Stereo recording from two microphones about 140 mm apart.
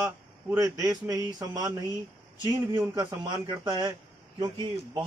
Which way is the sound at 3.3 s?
30° right (ahead or behind).